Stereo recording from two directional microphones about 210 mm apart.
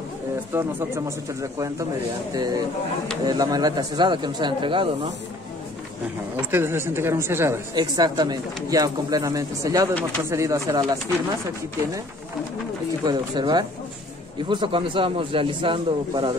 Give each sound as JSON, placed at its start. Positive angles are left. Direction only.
{"t": 0.5, "sound": "speech", "side_deg": -10}
{"t": 6.5, "sound": "speech", "side_deg": -10}
{"t": 13.0, "sound": "speech", "side_deg": -20}